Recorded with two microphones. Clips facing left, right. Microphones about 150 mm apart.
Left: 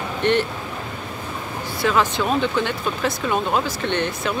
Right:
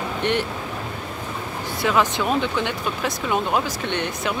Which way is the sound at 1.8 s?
15° right (ahead or behind).